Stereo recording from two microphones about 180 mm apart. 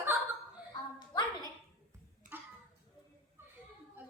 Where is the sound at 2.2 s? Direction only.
45° right (ahead or behind).